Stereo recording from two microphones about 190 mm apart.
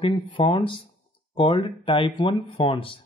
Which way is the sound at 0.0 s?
25° left (ahead or behind).